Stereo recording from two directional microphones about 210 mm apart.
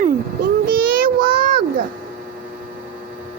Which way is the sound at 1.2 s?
45° right (ahead or behind).